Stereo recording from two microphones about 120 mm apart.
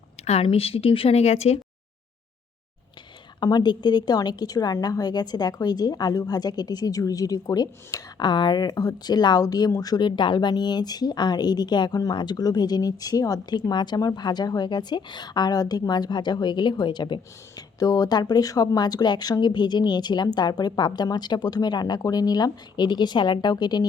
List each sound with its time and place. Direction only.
0.4 s speech: 50° left (ahead or behind)
3.4 s a woman's voice: 35° left (ahead or behind)